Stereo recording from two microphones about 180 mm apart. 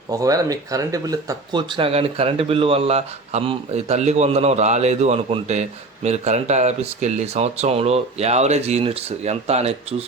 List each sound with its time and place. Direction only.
0.1 s speech: 20° right (ahead or behind); by 9.7 s 35° right (ahead or behind)